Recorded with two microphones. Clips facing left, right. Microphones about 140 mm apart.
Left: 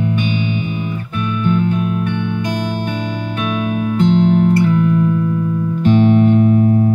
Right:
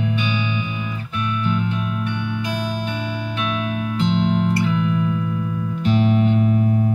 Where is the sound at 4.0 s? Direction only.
45° left (ahead or behind).